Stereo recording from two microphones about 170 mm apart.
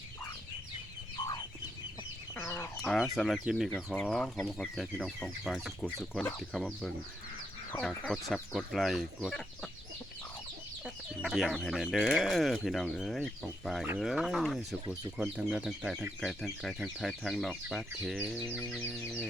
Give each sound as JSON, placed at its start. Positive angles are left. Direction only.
{"t": 2.3, "sound": "fowl", "side_deg": 15}
{"t": 2.8, "sound": "speech", "side_deg": 0}
{"t": 10.8, "sound": "speech", "side_deg": -5}